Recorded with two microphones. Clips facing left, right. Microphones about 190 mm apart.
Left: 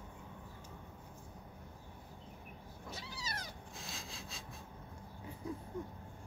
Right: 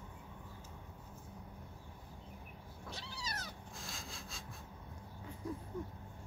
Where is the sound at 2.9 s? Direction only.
5° left (ahead or behind).